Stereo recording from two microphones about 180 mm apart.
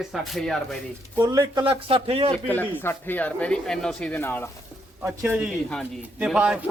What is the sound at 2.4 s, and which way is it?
A man's voice, 10° left (ahead or behind).